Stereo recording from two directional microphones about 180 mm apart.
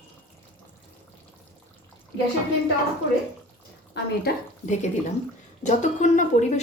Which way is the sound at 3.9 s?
70° left (ahead or behind).